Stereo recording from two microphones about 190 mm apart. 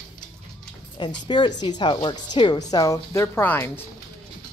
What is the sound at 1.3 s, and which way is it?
A woman's voice, 20° left (ahead or behind).